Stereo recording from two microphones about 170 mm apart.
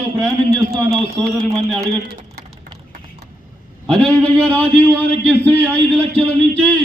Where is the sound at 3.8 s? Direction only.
5° left (ahead or behind).